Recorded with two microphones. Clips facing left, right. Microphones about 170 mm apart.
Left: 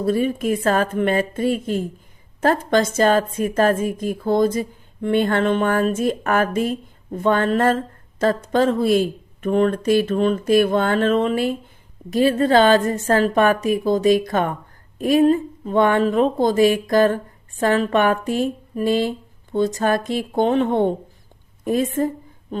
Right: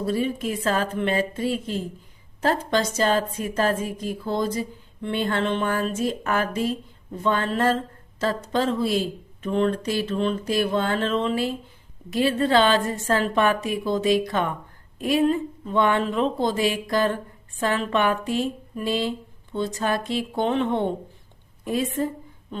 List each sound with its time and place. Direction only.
0.0 s speech: 50° left (ahead or behind)